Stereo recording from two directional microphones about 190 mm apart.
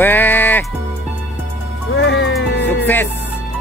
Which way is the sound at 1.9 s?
70° left (ahead or behind).